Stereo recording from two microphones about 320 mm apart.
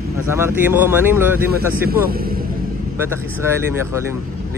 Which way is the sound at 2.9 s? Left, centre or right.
Centre.